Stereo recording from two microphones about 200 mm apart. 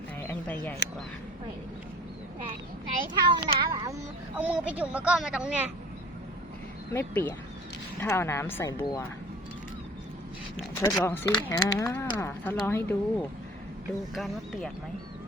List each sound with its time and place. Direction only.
0.2 s a sound: 10° left (ahead or behind)
3.2 s a child's voice: 20° right (ahead or behind)
4.4 s speech: 10° right (ahead or behind)
6.9 s speech: 10° left (ahead or behind)
10.8 s speech: 15° left (ahead or behind)